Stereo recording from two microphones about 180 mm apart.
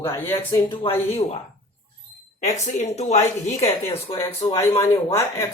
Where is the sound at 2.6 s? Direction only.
35° left (ahead or behind).